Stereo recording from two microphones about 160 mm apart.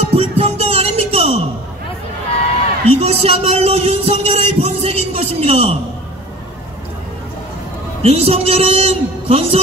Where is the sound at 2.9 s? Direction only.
40° right (ahead or behind).